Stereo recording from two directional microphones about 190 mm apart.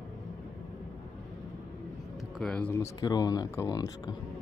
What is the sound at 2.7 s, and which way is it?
Speech, 20° left (ahead or behind).